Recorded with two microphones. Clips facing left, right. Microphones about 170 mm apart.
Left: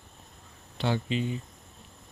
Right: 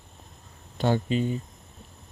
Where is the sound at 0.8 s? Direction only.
45° right (ahead or behind).